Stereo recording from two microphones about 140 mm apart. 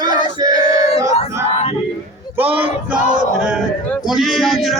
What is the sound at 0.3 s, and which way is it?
Battle cry, 30° right (ahead or behind).